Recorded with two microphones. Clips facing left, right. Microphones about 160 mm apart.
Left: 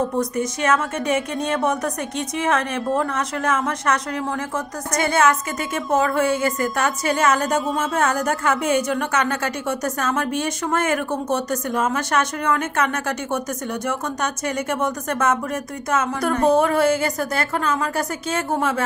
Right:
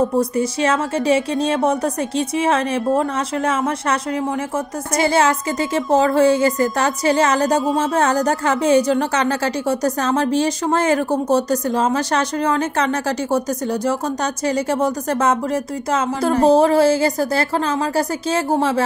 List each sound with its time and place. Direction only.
0.2 s a woman's voice: 30° right (ahead or behind)